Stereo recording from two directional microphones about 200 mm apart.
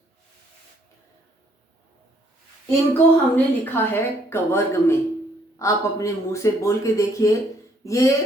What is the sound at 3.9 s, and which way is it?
Speech, 10° left (ahead or behind).